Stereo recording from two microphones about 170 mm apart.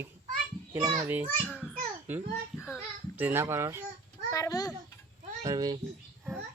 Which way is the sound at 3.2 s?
10° right (ahead or behind).